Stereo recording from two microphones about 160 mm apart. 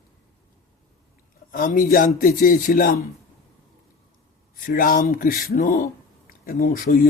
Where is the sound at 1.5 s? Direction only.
60° left (ahead or behind).